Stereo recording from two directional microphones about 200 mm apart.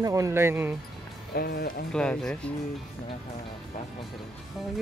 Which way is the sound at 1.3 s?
50° left (ahead or behind).